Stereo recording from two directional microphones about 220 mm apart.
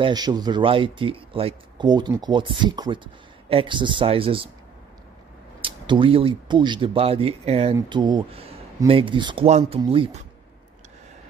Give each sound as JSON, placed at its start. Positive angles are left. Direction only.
{"t": 0.0, "sound": "speech", "side_deg": -20}
{"t": 5.6, "sound": "speech", "side_deg": -25}